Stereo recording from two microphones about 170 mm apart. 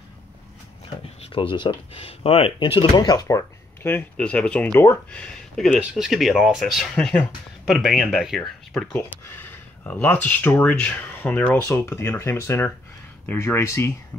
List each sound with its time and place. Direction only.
1.2 s speech: 30° left (ahead or behind); by 13.9 s 15° left (ahead or behind)